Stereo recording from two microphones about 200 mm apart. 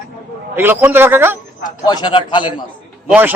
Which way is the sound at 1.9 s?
20° left (ahead or behind).